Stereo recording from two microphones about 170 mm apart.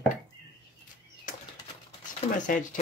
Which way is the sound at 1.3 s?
50° left (ahead or behind).